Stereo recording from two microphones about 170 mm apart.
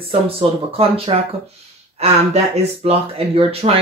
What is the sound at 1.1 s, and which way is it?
Speech, 30° right (ahead or behind).